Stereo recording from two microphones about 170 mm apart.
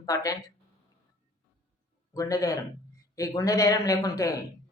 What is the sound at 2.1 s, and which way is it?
A woman's voice, 20° left (ahead or behind).